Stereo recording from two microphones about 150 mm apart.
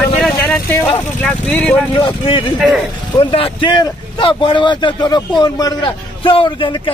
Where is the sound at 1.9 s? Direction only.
35° left (ahead or behind).